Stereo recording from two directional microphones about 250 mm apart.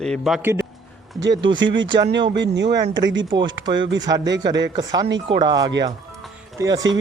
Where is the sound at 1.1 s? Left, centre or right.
Right.